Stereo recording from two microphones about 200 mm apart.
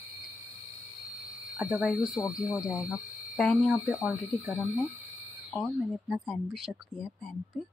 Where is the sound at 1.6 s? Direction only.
5° right (ahead or behind).